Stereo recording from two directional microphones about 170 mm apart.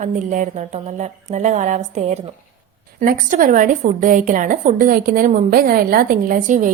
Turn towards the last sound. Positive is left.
turn(degrees=-50)  # may be behind; listen again after turning